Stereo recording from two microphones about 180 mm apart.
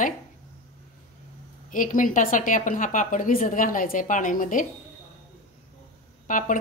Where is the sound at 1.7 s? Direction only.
50° left (ahead or behind).